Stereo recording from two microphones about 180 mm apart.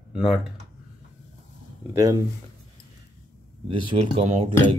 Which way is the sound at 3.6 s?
30° right (ahead or behind).